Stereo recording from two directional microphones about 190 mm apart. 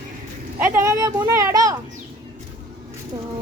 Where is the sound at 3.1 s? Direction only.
25° right (ahead or behind).